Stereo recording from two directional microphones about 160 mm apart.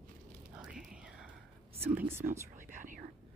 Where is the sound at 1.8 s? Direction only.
10° right (ahead or behind).